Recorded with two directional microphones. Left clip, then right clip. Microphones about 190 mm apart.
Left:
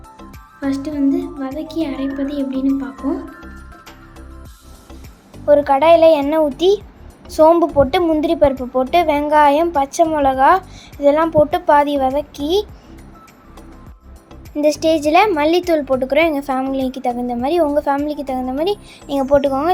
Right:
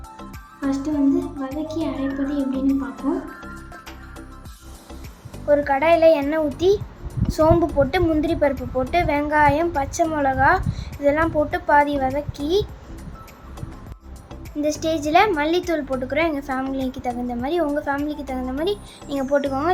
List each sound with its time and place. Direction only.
0.7 s music: 20° left (ahead or behind)
1.5 s a woman's voice: 20° left (ahead or behind)
2.6 s music: centre (ahead or behind)
5.5 s a woman's voice: 20° left (ahead or behind)
14.6 s a woman's voice: 25° left (ahead or behind)